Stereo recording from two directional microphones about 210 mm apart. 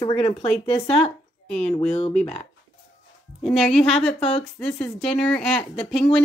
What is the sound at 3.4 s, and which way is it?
Speech, centre (ahead or behind).